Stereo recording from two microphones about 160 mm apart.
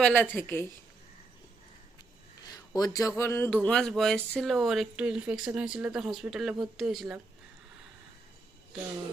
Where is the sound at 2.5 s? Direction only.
25° left (ahead or behind).